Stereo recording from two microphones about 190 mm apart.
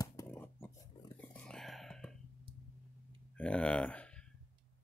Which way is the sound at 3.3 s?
5° left (ahead or behind).